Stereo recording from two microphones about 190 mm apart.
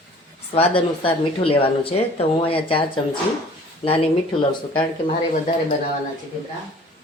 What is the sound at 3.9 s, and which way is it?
Speech, 25° left (ahead or behind).